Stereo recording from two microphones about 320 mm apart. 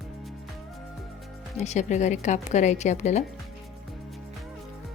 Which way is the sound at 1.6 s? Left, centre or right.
Left.